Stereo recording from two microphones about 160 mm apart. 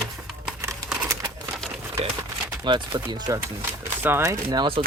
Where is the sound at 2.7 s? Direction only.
25° right (ahead or behind).